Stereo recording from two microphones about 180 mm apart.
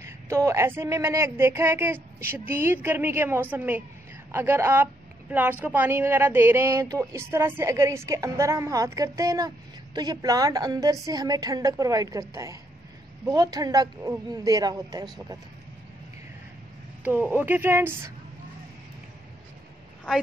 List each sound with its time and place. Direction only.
0.0 s a woman's voice: 15° right (ahead or behind)
17.0 s speech: 10° right (ahead or behind)